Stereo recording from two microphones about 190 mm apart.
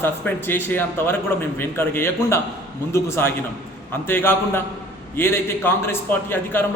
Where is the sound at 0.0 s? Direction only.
10° left (ahead or behind).